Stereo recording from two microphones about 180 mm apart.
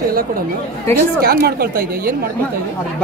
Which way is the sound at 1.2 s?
60° right (ahead or behind).